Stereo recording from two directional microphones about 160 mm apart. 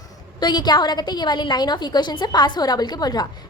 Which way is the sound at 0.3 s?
25° left (ahead or behind).